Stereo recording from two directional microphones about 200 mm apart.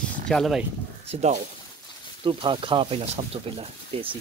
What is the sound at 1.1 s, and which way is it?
Speech, 35° right (ahead or behind).